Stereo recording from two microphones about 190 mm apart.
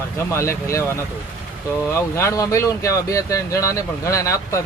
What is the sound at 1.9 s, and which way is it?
Speech, 15° left (ahead or behind).